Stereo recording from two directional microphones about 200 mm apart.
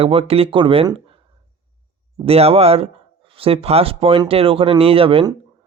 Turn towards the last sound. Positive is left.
turn(degrees=-25)  # may be behind; listen again after turning